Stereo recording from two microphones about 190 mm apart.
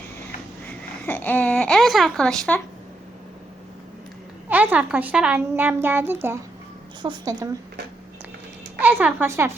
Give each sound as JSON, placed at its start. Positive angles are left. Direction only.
{"t": 1.0, "sound": "a sound", "side_deg": 10}
{"t": 4.4, "sound": "a woman's voice", "side_deg": -10}
{"t": 8.8, "sound": "a woman's voice", "side_deg": -10}